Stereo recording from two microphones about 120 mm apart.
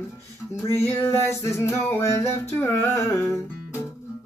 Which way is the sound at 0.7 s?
20° left (ahead or behind).